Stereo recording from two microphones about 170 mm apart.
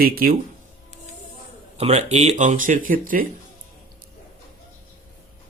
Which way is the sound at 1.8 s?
40° right (ahead or behind).